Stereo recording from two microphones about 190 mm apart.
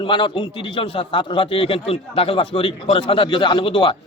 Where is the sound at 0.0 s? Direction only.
25° left (ahead or behind).